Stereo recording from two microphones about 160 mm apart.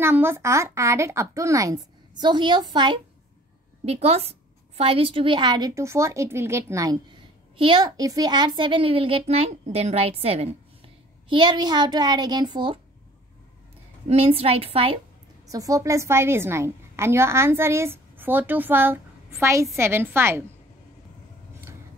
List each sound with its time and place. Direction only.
0.0 s a woman's voice: 15° right (ahead or behind)
3.8 s a woman's voice: 40° right (ahead or behind)
14.0 s a woman's voice: 40° right (ahead or behind)
15.5 s a woman's voice: 20° right (ahead or behind)